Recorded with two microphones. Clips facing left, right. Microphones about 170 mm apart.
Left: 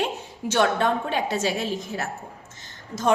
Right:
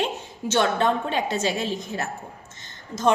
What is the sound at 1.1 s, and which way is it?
Speech, 10° left (ahead or behind).